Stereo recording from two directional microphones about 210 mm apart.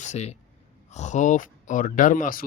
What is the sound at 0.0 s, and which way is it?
A man's voice, 30° left (ahead or behind).